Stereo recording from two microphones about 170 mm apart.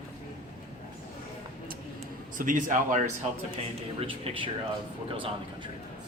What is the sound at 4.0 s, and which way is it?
Speech, 30° right (ahead or behind).